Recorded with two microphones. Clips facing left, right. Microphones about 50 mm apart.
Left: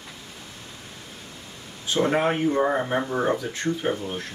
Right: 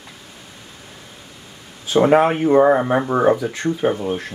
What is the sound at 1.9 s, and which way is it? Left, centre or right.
Speech, right.